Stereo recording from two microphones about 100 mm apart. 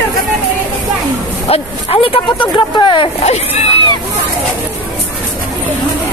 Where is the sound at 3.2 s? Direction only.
90° left.